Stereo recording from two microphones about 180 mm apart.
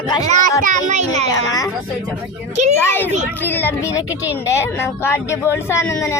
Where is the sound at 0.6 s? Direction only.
45° right (ahead or behind).